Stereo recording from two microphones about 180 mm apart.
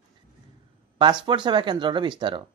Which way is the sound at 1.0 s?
25° right (ahead or behind).